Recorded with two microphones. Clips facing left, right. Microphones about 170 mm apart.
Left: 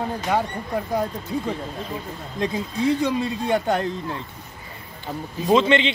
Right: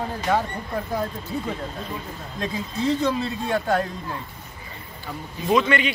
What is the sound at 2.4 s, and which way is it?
Speech, 15° left (ahead or behind).